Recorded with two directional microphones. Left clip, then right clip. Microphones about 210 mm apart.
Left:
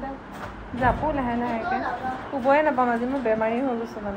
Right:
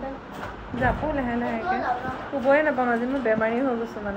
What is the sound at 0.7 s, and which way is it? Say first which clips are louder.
Speech: left 2 dB; centre (ahead or behind).